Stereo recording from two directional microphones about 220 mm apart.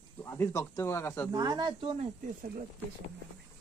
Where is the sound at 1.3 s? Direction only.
15° right (ahead or behind).